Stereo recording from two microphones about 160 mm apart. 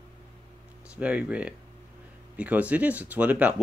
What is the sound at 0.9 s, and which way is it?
Speech, 10° right (ahead or behind).